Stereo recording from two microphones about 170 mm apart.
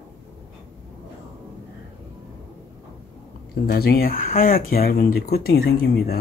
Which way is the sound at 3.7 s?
60° left (ahead or behind).